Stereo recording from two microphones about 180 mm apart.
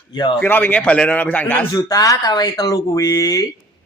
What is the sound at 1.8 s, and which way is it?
Speech, 20° left (ahead or behind).